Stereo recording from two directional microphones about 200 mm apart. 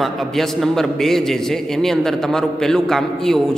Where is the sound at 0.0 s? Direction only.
Centre (ahead or behind).